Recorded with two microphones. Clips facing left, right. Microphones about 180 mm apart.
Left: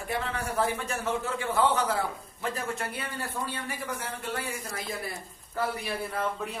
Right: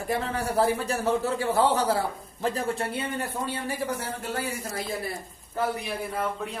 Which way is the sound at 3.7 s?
35° right (ahead or behind).